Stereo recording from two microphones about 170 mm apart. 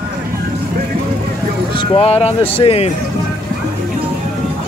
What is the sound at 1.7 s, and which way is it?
A man's voice, 30° left (ahead or behind).